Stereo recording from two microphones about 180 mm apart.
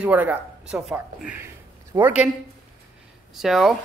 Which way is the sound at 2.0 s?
5° right (ahead or behind).